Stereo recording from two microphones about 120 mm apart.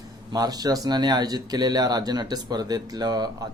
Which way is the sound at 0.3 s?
30° right (ahead or behind).